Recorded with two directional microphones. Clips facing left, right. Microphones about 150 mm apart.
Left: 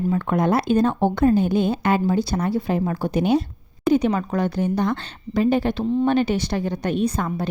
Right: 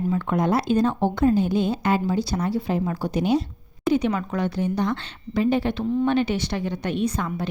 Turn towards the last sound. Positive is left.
turn(degrees=40)  # may be behind; listen again after turning